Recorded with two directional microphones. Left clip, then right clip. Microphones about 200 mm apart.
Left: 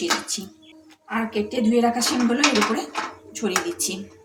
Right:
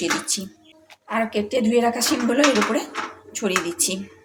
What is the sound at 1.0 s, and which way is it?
A woman's voice, 35° right (ahead or behind).